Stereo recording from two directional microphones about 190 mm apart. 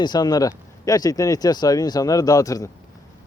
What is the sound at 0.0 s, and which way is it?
Speech, 20° left (ahead or behind).